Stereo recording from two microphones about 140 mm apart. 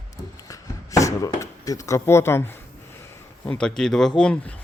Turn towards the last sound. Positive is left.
turn(degrees=5)  # may be behind; listen again after turning